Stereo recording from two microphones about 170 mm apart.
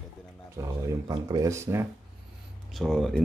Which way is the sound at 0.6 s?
20° right (ahead or behind).